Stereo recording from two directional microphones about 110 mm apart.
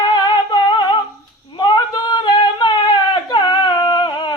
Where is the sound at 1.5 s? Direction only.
45° left (ahead or behind).